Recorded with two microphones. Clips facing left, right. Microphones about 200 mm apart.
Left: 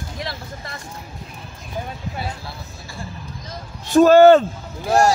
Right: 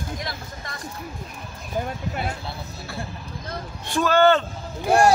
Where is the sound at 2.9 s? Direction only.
60° right (ahead or behind).